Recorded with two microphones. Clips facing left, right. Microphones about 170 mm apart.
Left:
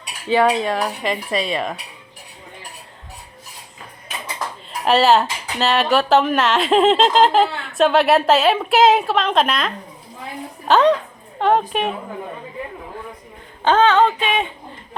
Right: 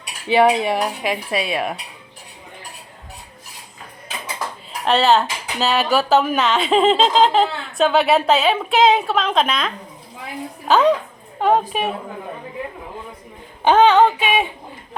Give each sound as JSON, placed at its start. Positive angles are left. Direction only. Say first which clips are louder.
{"t": 0.3, "sound": "cutlery", "louder": "right 1 dB", "side_deg": -10}
{"t": 4.9, "sound": "speech", "louder": "left 1 dB", "side_deg": 5}
{"t": 13.7, "sound": "cutlery", "louder": "right 2 dB", "side_deg": -15}